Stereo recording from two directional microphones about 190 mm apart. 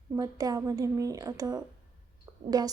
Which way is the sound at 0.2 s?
20° right (ahead or behind).